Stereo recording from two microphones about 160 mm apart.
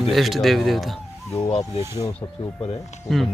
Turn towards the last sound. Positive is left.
turn(degrees=0)  # may be behind; listen again after turning